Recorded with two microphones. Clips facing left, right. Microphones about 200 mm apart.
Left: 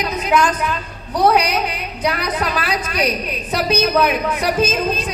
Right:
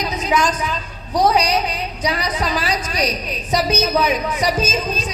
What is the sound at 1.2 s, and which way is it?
A woman's voice, 60° left (ahead or behind).